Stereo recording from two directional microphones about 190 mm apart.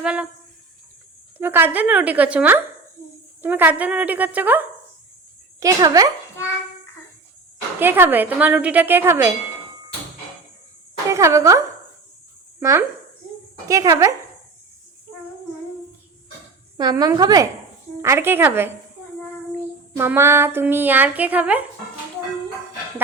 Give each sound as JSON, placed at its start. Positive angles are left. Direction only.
{"t": 0.0, "sound": "speech", "side_deg": -5}
{"t": 1.4, "sound": "a woman's voice", "side_deg": -10}
{"t": 7.8, "sound": "a woman's voice", "side_deg": -10}
{"t": 11.1, "sound": "a woman's voice", "side_deg": -15}
{"t": 16.7, "sound": "a woman's voice", "side_deg": -20}
{"t": 20.0, "sound": "a woman's voice", "side_deg": -15}